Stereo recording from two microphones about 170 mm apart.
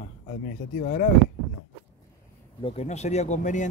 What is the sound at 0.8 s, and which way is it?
Speech, 60° left (ahead or behind).